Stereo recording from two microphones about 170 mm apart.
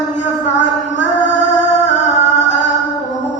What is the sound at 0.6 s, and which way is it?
Music, 45° left (ahead or behind).